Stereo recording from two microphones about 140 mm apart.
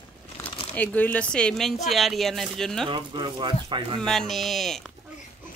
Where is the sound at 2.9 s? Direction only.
35° right (ahead or behind).